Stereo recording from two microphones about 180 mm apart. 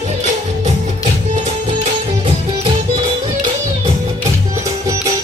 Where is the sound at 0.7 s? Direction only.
40° right (ahead or behind).